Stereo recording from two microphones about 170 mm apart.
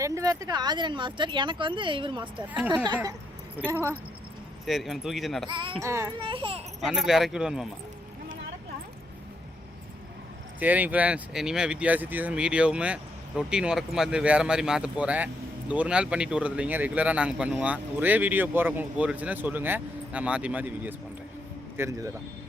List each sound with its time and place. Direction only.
0.0 s speech: 20° right (ahead or behind)
2.5 s speech: 10° right (ahead or behind)
4.6 s speech: centre (ahead or behind)
5.5 s speech: 30° right (ahead or behind)
5.8 s speech: 15° right (ahead or behind)
6.1 s speech: 30° right (ahead or behind)
6.8 s speech: centre (ahead or behind)
10.6 s speech: 10° right (ahead or behind)